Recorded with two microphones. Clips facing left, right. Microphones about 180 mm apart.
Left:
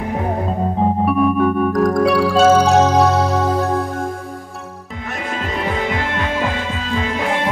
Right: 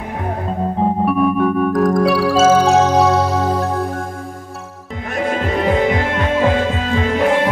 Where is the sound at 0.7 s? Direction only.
Centre (ahead or behind).